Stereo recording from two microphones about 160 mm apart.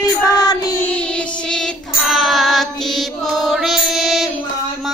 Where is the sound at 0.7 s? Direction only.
10° left (ahead or behind).